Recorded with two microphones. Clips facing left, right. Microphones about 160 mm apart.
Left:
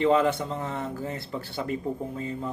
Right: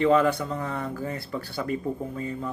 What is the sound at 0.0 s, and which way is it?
Speech, 20° left (ahead or behind).